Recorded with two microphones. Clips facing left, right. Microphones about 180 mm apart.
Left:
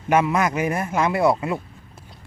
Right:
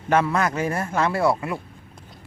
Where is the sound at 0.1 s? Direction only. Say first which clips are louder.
Left 1 dB; 15° left (ahead or behind).